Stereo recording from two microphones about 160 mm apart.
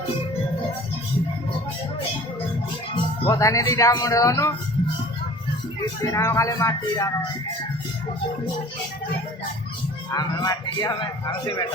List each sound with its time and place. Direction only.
3.2 s speech: 20° left (ahead or behind)
5.8 s speech: 20° left (ahead or behind)
10.1 s speech: 20° left (ahead or behind)